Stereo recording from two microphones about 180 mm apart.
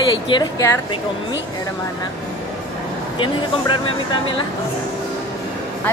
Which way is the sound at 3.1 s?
25° left (ahead or behind).